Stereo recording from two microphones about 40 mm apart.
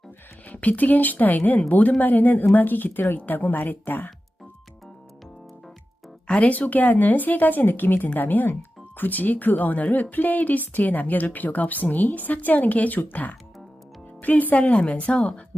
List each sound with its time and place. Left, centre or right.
0.4 s speech: left
6.2 s speech: left
14.6 s a woman's voice: left